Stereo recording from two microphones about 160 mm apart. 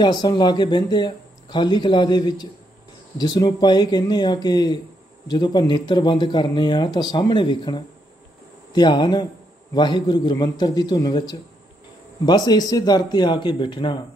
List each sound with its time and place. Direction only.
0.0 s speech: 25° left (ahead or behind)